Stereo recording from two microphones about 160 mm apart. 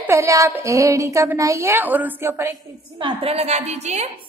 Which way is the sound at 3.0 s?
35° right (ahead or behind).